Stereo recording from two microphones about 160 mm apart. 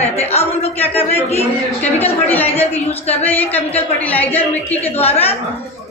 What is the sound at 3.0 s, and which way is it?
Speech, 40° left (ahead or behind).